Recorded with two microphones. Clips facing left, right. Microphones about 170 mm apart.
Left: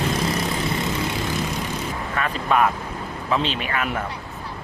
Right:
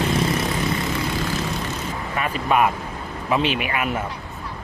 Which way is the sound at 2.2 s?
10° right (ahead or behind).